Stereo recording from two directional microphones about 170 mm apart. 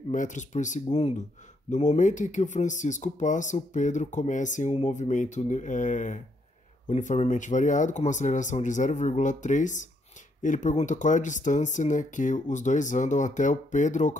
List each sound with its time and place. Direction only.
0.1 s speech: 45° left (ahead or behind)